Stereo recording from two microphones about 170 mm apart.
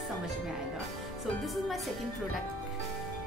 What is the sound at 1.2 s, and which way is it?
A woman's voice, centre (ahead or behind).